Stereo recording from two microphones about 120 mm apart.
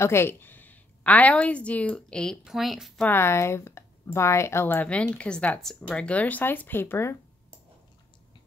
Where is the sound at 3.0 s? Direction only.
20° left (ahead or behind).